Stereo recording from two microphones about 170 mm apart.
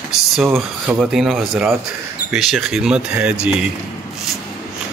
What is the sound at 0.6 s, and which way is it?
Speech, 5° right (ahead or behind).